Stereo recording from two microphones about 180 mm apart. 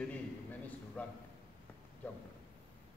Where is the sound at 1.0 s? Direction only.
5° left (ahead or behind).